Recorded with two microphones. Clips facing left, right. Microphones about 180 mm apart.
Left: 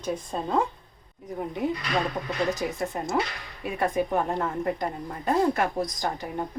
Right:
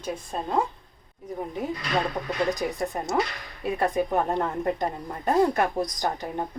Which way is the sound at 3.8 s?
20° right (ahead or behind).